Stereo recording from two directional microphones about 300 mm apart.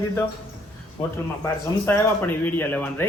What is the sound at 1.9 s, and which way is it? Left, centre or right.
Speech, centre.